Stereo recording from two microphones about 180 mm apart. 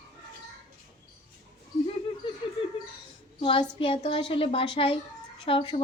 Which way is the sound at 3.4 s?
30° left (ahead or behind).